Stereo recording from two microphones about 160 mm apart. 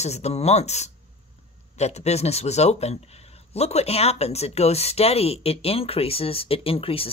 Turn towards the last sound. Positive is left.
turn(degrees=35)  # may be behind; listen again after turning